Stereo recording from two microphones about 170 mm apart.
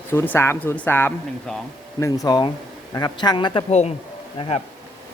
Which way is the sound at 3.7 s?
40° left (ahead or behind).